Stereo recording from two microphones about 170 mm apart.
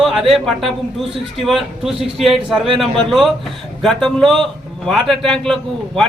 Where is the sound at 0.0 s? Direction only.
Centre (ahead or behind).